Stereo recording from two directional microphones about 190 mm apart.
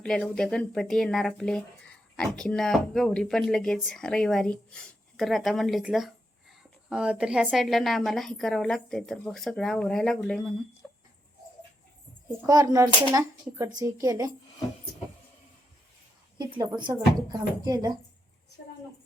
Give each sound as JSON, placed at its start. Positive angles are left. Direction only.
{"t": 0.0, "sound": "speech", "side_deg": 5}
{"t": 10.8, "sound": "dog", "side_deg": 10}
{"t": 12.5, "sound": "speech", "side_deg": -20}
{"t": 16.4, "sound": "speech", "side_deg": -25}